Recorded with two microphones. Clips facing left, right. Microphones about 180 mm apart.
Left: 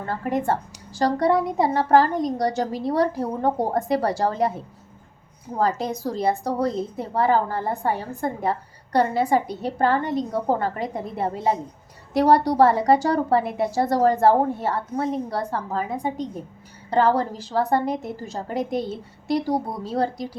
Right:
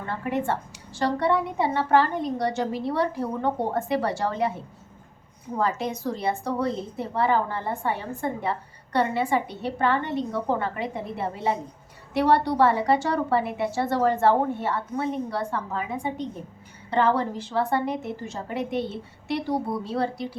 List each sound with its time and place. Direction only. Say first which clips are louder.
0.0 s a woman's voice: left 3 dB; 40° left (ahead or behind)
5.5 s a woman's voice: left 3 dB; 35° left (ahead or behind)